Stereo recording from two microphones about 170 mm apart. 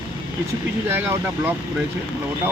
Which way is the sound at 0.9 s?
15° right (ahead or behind).